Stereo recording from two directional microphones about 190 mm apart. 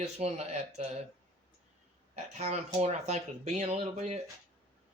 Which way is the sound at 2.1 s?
35° right (ahead or behind).